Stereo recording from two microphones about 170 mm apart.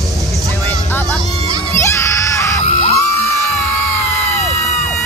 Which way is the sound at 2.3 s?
15° left (ahead or behind).